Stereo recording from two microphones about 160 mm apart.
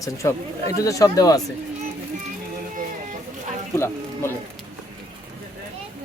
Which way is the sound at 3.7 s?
15° left (ahead or behind).